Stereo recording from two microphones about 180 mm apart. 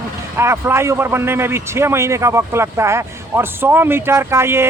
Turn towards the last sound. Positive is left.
turn(degrees=-15)  # may be behind; listen again after turning